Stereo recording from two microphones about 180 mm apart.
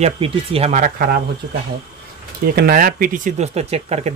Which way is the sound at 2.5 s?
55° right (ahead or behind).